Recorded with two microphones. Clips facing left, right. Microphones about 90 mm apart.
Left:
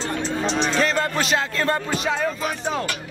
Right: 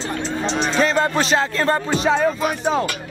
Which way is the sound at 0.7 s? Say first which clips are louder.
Right 3 dB; 20° right (ahead or behind).